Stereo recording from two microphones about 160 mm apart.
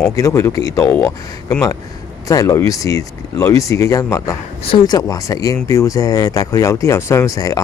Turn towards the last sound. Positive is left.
turn(degrees=20)  # may be behind; listen again after turning